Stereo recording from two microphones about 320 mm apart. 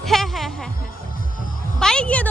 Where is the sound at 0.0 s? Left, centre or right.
Centre.